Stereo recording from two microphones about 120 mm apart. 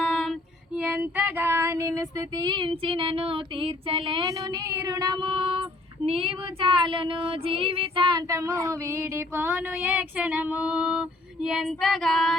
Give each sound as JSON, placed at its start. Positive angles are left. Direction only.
{"t": 0.0, "sound": "female singing", "side_deg": 0}
{"t": 0.8, "sound": "female singing", "side_deg": -10}
{"t": 4.3, "sound": "female singing", "side_deg": -30}
{"t": 6.1, "sound": "child singing", "side_deg": -50}
{"t": 8.0, "sound": "female singing", "side_deg": -35}
{"t": 8.4, "sound": "female singing", "side_deg": -25}